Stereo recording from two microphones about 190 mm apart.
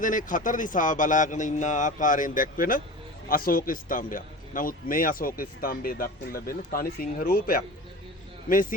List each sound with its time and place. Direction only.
0.0 s a man's voice: 45° left (ahead or behind)